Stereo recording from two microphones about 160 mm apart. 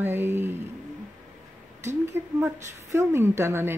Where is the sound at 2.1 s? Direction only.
15° right (ahead or behind).